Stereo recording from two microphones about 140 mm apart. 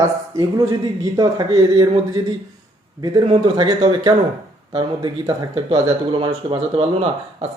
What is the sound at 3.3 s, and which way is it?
Speech, 35° right (ahead or behind).